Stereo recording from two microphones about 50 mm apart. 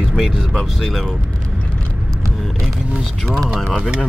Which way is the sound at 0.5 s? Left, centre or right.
Centre.